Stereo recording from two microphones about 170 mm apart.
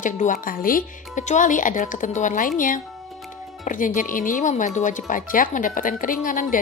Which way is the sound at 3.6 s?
50° left (ahead or behind).